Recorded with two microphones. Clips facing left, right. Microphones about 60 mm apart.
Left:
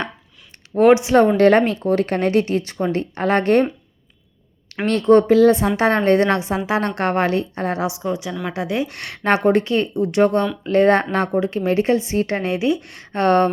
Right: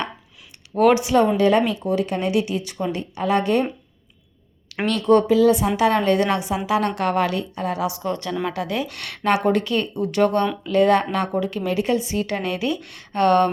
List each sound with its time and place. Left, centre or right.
0.8 s speech: left
1.4 s speech: left
4.9 s a woman's voice: left
8.0 s a woman's voice: centre
10.6 s a woman's voice: left